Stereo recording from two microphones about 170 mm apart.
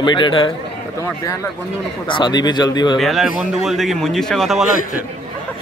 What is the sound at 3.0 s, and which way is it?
A man's voice, centre (ahead or behind).